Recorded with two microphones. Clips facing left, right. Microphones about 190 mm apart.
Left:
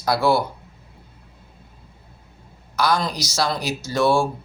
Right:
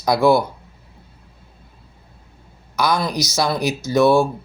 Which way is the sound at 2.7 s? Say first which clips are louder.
Right 2 dB; 10° right (ahead or behind).